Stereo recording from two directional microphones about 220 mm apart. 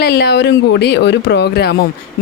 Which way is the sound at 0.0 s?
45° left (ahead or behind).